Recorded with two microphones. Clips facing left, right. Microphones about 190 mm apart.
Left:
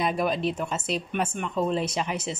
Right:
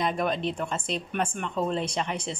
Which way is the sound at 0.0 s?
5° left (ahead or behind).